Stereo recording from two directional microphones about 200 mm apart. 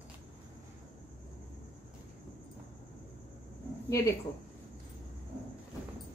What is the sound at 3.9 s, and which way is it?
Speech, 15° left (ahead or behind).